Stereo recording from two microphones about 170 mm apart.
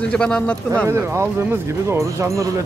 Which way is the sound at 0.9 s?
15° right (ahead or behind).